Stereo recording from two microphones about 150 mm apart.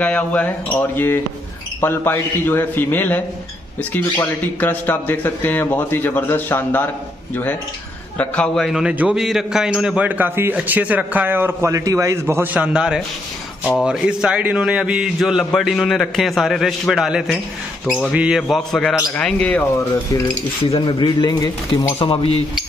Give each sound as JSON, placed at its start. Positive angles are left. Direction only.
{"t": 0.0, "sound": "speech", "side_deg": 10}
{"t": 8.2, "sound": "a man's voice", "side_deg": 5}
{"t": 20.7, "sound": "speech", "side_deg": 35}
{"t": 21.9, "sound": "speech", "side_deg": 40}